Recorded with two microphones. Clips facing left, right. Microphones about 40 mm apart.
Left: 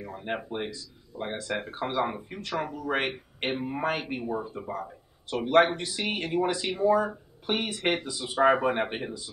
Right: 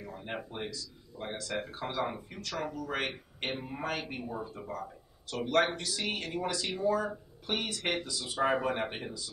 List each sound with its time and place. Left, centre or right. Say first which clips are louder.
0.0 s speech: left 6 dB; left